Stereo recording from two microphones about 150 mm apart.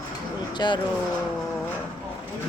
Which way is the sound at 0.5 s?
30° left (ahead or behind).